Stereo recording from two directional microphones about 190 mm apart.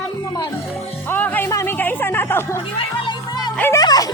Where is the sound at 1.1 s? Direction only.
10° left (ahead or behind).